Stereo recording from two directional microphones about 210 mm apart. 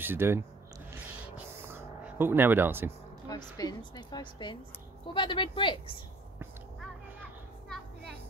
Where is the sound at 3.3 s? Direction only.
20° left (ahead or behind).